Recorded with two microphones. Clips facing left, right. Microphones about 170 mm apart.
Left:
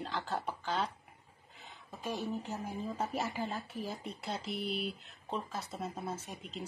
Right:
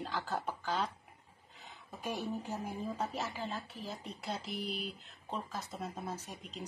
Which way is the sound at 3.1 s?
15° left (ahead or behind).